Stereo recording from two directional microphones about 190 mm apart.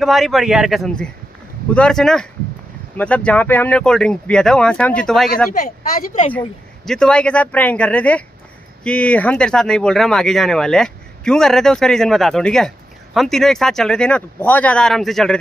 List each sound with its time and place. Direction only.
0.0 s speech: centre (ahead or behind)
5.5 s speech: 40° left (ahead or behind)
6.9 s speech: 5° left (ahead or behind)